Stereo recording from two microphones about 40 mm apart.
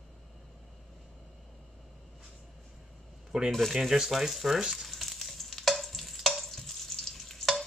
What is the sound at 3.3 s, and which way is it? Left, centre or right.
Speech, centre.